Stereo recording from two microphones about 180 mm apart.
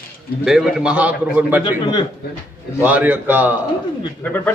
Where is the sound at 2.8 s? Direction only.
10° right (ahead or behind).